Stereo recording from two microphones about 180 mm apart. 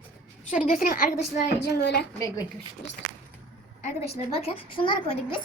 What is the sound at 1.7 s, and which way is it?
Speech, 65° left (ahead or behind).